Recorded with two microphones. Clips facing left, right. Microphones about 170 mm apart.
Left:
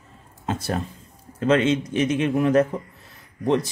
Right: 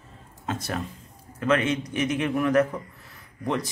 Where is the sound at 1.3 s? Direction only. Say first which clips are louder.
Left 4 dB; 25° left (ahead or behind).